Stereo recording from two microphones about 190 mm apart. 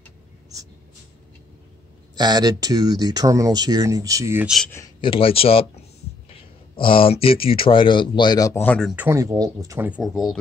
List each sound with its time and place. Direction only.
2.1 s speech: 20° right (ahead or behind)
4.6 s speech: 15° left (ahead or behind)
5.0 s speech: 30° left (ahead or behind)
6.8 s speech: 30° left (ahead or behind); by 8.9 s 5° left (ahead or behind)
8.9 s speech: 10° right (ahead or behind)